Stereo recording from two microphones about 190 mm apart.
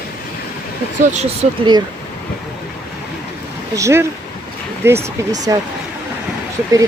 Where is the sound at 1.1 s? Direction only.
35° right (ahead or behind).